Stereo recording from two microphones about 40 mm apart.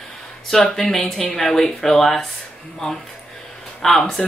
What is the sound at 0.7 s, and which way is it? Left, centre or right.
Speech, centre.